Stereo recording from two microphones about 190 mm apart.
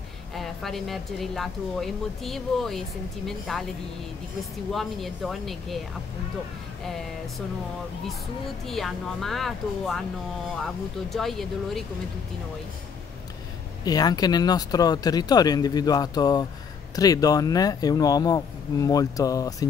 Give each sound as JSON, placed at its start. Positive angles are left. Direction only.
{"t": 0.3, "sound": "speech", "side_deg": 0}
{"t": 4.7, "sound": "speech", "side_deg": 0}
{"t": 8.6, "sound": "speech", "side_deg": 0}
{"t": 13.8, "sound": "speech", "side_deg": 20}